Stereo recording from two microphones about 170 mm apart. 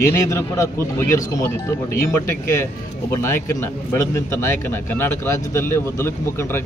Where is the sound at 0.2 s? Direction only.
20° left (ahead or behind).